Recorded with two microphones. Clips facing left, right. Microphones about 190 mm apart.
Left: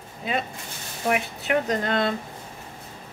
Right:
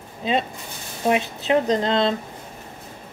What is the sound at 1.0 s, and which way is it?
A woman's voice, 25° right (ahead or behind).